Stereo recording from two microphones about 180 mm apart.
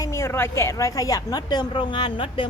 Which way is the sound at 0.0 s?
15° left (ahead or behind).